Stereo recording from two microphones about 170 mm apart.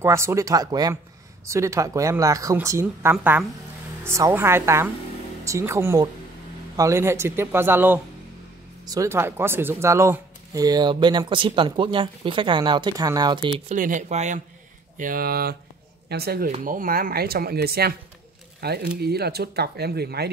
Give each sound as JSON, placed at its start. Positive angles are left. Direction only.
{"t": 0.0, "sound": "speech", "side_deg": -15}
{"t": 13.7, "sound": "speech", "side_deg": -50}
{"t": 15.0, "sound": "speech", "side_deg": -55}